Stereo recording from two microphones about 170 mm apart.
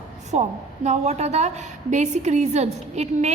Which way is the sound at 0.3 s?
40° right (ahead or behind).